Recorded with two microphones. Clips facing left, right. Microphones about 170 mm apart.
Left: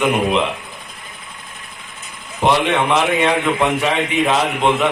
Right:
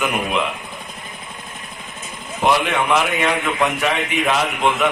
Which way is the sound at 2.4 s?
30° left (ahead or behind).